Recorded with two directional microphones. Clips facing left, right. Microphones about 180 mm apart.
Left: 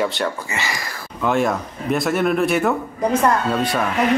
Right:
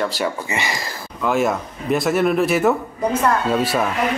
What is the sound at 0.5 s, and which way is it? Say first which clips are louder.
Music: right 2 dB; 20° right (ahead or behind).